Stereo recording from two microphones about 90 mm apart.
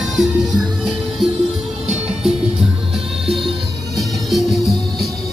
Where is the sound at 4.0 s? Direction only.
Centre (ahead or behind).